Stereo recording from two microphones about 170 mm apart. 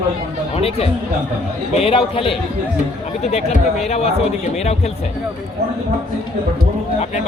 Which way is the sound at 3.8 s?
40° left (ahead or behind).